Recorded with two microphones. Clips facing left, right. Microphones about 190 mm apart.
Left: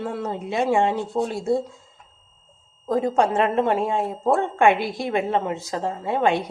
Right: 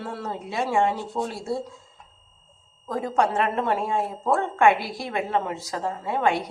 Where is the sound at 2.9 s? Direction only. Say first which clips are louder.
Left 4 dB; 25° left (ahead or behind).